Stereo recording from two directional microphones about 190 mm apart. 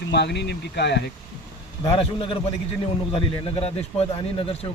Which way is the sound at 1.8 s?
30° left (ahead or behind).